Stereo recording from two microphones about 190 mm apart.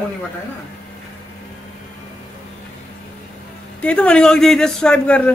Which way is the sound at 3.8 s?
5° left (ahead or behind).